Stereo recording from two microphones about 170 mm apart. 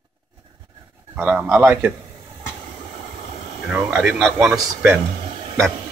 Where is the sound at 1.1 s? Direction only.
10° right (ahead or behind).